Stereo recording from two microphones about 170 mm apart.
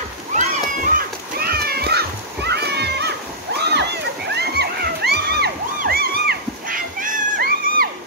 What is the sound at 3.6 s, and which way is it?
Splash, 80° right.